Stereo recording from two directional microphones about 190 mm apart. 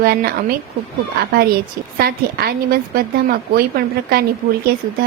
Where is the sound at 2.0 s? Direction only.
55° right (ahead or behind).